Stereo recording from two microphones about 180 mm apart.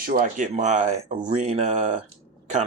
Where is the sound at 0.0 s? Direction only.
55° right (ahead or behind).